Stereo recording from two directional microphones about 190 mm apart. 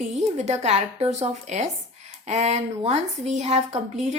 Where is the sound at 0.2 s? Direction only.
35° right (ahead or behind).